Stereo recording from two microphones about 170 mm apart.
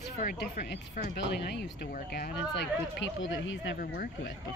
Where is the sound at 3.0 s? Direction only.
90° left; by 4.3 s 65° left (ahead or behind).